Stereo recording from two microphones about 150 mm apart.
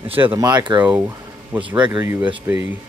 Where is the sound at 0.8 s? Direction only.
10° right (ahead or behind).